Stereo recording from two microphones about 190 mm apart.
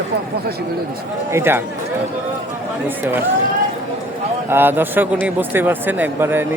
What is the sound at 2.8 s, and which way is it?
Speech, 10° right (ahead or behind).